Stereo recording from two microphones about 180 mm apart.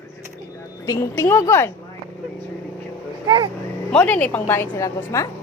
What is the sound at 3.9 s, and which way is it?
A woman's voice, 5° left (ahead or behind).